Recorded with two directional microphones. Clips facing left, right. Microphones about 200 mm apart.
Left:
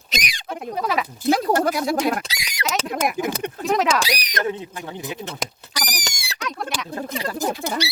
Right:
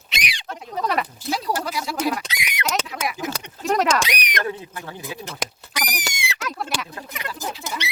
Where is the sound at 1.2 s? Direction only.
50° left (ahead or behind).